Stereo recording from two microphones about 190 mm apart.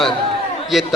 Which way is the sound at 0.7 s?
Centre (ahead or behind).